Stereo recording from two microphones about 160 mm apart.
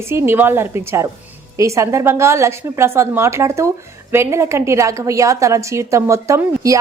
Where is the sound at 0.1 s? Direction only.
15° right (ahead or behind).